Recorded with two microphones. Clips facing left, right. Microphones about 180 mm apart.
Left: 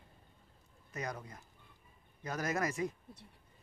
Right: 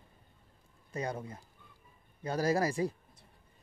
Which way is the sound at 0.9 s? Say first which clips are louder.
Right 5 dB; 30° right (ahead or behind).